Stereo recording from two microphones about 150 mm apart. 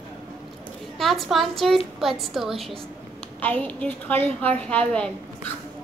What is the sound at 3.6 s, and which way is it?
A woman's voice, 10° left (ahead or behind).